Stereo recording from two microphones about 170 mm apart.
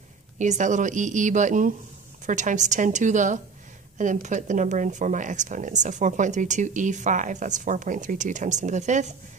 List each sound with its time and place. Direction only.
0.4 s speech: 45° right (ahead or behind)